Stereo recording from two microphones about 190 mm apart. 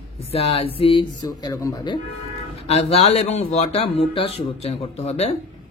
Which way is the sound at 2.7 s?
35° left (ahead or behind).